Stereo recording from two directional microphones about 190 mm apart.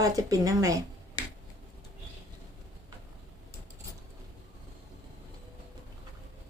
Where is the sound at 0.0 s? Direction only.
20° right (ahead or behind).